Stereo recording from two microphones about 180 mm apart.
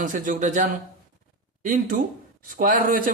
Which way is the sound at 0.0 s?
45° right (ahead or behind).